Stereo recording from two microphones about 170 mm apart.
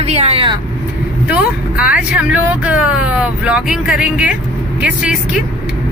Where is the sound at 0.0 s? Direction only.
40° right (ahead or behind).